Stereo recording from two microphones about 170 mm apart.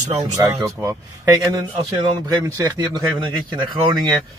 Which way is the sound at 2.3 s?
25° right (ahead or behind).